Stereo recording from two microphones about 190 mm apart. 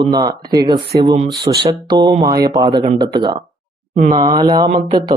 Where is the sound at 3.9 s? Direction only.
40° right (ahead or behind).